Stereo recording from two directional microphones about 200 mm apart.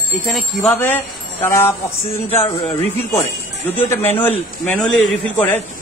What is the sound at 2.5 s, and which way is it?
Speech, 30° left (ahead or behind).